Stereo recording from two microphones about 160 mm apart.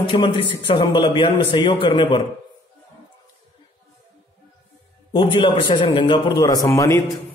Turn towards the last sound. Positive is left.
turn(degrees=20)  # may be behind; listen again after turning